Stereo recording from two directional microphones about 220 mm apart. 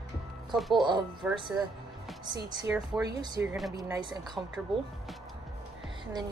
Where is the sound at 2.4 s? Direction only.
10° right (ahead or behind).